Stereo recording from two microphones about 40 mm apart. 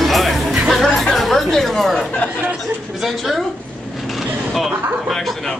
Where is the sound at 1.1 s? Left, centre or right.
Centre.